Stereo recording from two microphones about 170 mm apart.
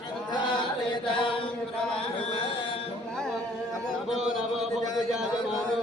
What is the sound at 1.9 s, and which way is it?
Carnatic music, 30° left (ahead or behind).